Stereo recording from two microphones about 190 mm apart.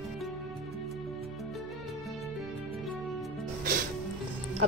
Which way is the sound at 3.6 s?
50° right (ahead or behind).